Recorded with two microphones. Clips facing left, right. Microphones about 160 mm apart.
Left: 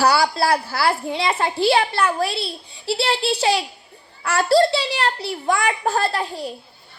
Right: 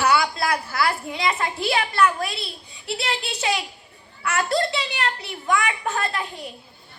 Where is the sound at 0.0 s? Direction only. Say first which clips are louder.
Left 3 dB; 35° left (ahead or behind).